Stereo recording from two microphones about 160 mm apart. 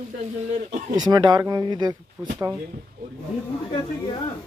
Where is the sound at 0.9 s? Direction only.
25° right (ahead or behind).